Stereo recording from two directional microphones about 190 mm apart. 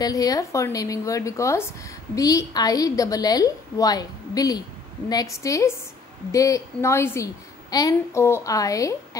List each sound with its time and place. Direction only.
0.0 s a woman's voice: 20° left (ahead or behind)